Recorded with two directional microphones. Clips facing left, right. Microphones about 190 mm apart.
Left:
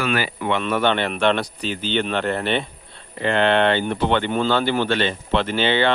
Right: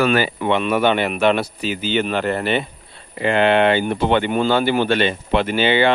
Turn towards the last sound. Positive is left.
turn(degrees=-10)  # may be behind; listen again after turning